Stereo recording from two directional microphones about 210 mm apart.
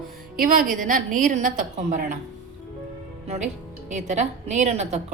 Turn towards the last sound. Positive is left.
turn(degrees=-30)  # may be behind; listen again after turning